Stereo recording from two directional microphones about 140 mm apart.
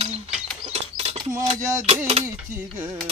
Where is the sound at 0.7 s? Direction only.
45° right (ahead or behind).